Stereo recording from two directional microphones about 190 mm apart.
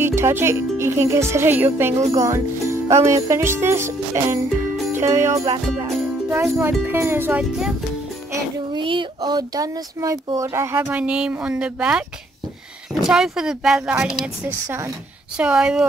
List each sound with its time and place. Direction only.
0.0 s speech: 10° right (ahead or behind)
8.3 s speech: 25° right (ahead or behind); by 12.0 s 5° right (ahead or behind)
13.0 s speech: 5° right (ahead or behind)